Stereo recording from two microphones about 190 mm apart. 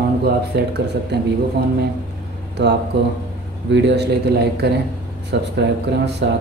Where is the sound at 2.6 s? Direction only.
65° right (ahead or behind).